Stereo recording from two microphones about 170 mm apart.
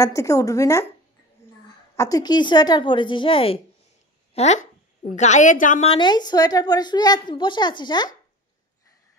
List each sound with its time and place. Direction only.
0.0 s a woman's voice: 20° left (ahead or behind)
2.0 s a woman's voice: 20° left (ahead or behind); by 5.9 s 50° left (ahead or behind)
5.9 s a woman's voice: 25° left (ahead or behind)